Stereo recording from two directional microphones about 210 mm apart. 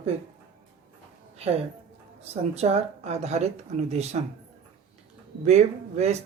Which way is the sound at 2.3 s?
30° right (ahead or behind).